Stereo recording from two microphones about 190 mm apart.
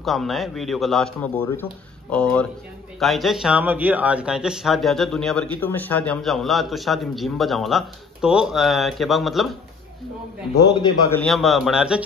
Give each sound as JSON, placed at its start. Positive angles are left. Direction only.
{"t": 0.0, "sound": "speech", "side_deg": 0}
{"t": 10.8, "sound": "a man's voice", "side_deg": 15}
{"t": 11.2, "sound": "speech", "side_deg": 0}